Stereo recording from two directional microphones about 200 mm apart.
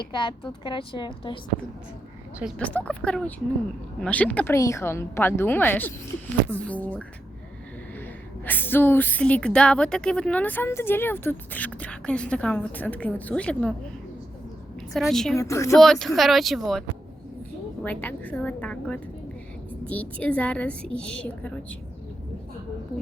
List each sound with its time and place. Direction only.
0.1 s a woman's voice: 25° left (ahead or behind)
2.6 s speech: 5° left (ahead or behind)
8.4 s speech: 10° left (ahead or behind)
14.9 s speech: centre (ahead or behind)
15.4 s speech: 15° left (ahead or behind)
15.8 s speech: centre (ahead or behind)
17.8 s speech: 5° left (ahead or behind)